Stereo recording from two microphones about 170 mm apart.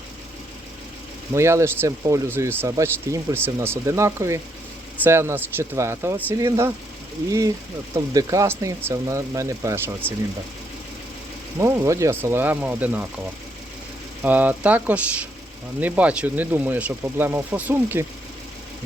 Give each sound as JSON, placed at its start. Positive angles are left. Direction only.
{"t": 1.3, "sound": "speech", "side_deg": -15}
{"t": 11.6, "sound": "speech", "side_deg": -15}
{"t": 14.2, "sound": "speech", "side_deg": -10}